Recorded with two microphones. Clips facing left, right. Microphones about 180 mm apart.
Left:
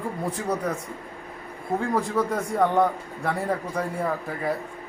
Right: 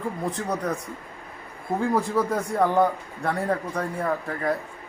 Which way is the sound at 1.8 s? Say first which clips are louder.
Right 2 dB; centre (ahead or behind).